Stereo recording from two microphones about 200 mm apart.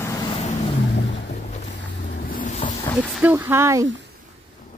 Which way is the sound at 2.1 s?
45° left (ahead or behind).